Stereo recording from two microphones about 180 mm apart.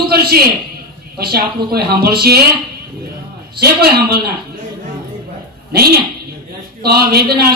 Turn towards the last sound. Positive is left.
turn(degrees=-60)  # may be behind; listen again after turning